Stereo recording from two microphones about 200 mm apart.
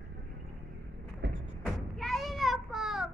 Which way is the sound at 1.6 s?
Centre (ahead or behind).